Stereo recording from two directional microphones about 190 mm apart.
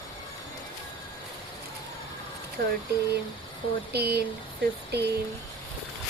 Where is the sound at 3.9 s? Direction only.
60° right (ahead or behind).